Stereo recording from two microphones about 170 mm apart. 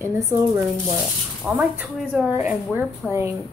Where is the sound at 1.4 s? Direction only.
5° right (ahead or behind).